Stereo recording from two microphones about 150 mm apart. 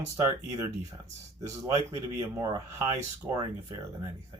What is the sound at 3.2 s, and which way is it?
Speech, 10° right (ahead or behind).